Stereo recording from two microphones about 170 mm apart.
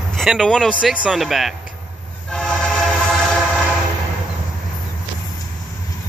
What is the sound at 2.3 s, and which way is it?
Train, 5° left (ahead or behind).